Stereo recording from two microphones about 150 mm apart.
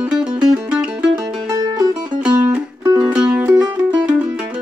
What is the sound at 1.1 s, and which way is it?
Music, 25° right (ahead or behind).